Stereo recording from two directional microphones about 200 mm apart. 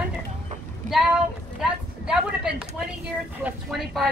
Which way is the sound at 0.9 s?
Centre (ahead or behind).